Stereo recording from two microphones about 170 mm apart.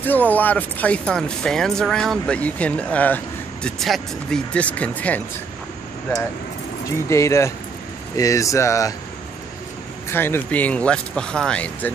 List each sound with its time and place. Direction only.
0.0 s speech: 10° left (ahead or behind)
7.1 s speech: 15° left (ahead or behind)
10.0 s speech: 15° left (ahead or behind)